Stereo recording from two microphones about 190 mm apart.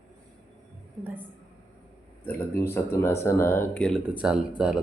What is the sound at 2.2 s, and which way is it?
Speech, 10° left (ahead or behind).